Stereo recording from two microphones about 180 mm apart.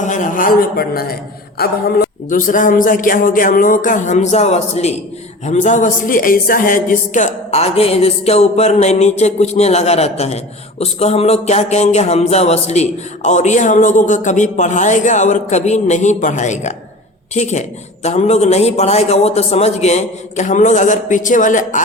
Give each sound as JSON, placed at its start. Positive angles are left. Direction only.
{"t": 0.0, "sound": "speech", "side_deg": 45}